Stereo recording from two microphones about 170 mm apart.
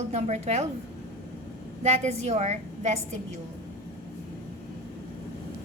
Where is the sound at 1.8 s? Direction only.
40° right (ahead or behind).